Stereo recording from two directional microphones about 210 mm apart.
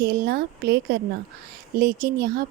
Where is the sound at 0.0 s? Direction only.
50° right (ahead or behind).